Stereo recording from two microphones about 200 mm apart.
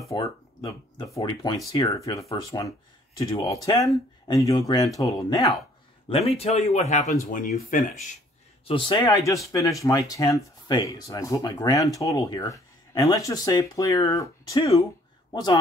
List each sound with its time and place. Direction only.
0.1 s speech: 15° left (ahead or behind)
6.0 s speech: 30° left (ahead or behind)
8.6 s a man's voice: 25° left (ahead or behind)
9.0 s speech: 15° left (ahead or behind)